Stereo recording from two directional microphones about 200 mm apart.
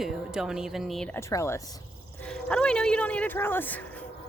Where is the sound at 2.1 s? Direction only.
5° left (ahead or behind).